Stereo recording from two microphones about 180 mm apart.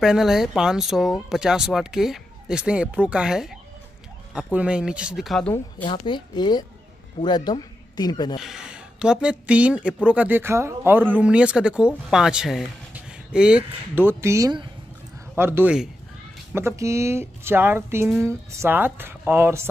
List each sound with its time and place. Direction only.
0.0 s speech: centre (ahead or behind)
6.0 s speech: 25° left (ahead or behind)
8.4 s speech: 5° right (ahead or behind)